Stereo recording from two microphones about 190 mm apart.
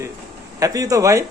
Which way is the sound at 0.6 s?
20° right (ahead or behind).